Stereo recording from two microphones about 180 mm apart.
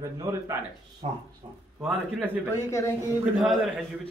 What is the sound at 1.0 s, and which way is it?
Speech, 35° right (ahead or behind).